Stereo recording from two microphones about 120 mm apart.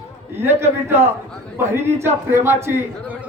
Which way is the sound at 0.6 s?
20° right (ahead or behind).